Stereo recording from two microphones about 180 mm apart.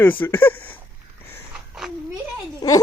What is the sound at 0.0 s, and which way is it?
Speech, 10° left (ahead or behind).